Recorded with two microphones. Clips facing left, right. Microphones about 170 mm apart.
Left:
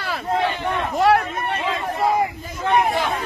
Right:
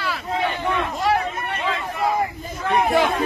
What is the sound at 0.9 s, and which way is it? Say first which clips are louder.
Speech: left 7 dB; 60° left (ahead or behind).